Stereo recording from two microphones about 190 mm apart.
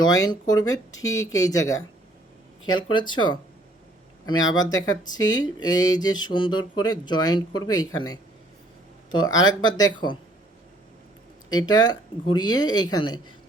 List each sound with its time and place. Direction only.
0.0 s speech: 20° left (ahead or behind)
11.4 s speech: 20° left (ahead or behind)